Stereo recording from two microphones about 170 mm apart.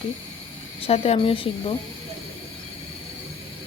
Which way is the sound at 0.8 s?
35° left (ahead or behind).